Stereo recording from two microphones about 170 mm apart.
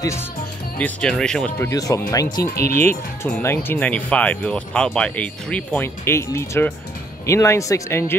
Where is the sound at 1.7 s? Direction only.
20° left (ahead or behind).